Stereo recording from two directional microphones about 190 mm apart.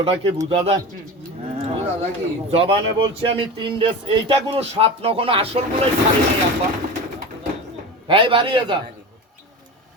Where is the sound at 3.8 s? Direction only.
25° right (ahead or behind).